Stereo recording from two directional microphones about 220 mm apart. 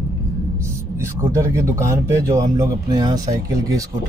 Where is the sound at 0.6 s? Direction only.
10° right (ahead or behind).